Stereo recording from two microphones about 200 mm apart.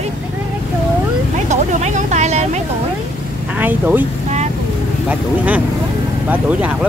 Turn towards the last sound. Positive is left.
turn(degrees=-5)  # may be behind; listen again after turning